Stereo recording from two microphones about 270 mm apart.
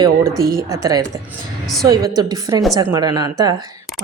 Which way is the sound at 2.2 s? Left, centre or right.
Centre.